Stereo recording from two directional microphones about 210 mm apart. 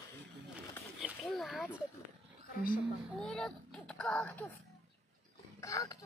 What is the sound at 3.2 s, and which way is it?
A child's voice, 5° left (ahead or behind).